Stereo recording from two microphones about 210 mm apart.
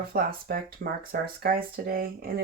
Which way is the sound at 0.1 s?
45° right (ahead or behind).